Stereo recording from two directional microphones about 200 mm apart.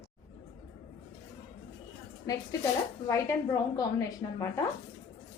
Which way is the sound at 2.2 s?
15° left (ahead or behind).